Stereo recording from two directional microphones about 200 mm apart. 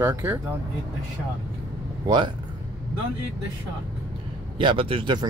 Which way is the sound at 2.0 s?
20° right (ahead or behind).